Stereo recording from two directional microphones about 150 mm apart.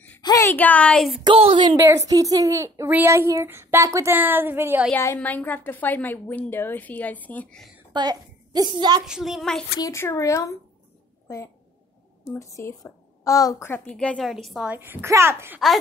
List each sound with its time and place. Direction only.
0.2 s a woman's voice: 25° left (ahead or behind); by 1.2 s centre (ahead or behind)
1.2 s a woman's voice: 35° right (ahead or behind)
1.8 s a child's voice: 20° right (ahead or behind)
4.9 s a woman's voice: 15° left (ahead or behind)
7.9 s a child's voice: 25° right (ahead or behind)
9.0 s a woman's voice: 5° right (ahead or behind)
9.8 s a woman's voice: 20° left (ahead or behind); by 14.7 s centre (ahead or behind)
14.7 s a child's voice: 15° right (ahead or behind)